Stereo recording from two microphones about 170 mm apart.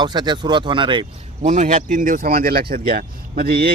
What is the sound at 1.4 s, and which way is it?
Speech, 45° right (ahead or behind).